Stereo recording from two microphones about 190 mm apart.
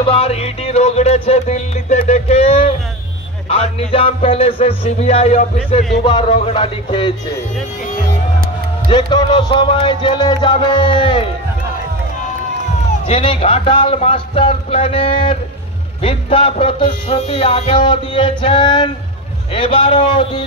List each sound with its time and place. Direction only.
0.0 s music: 30° left (ahead or behind)
8.8 s music: 25° left (ahead or behind)
12.9 s music: 30° left (ahead or behind)